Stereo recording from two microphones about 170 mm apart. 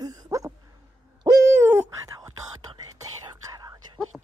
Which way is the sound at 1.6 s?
15° right (ahead or behind).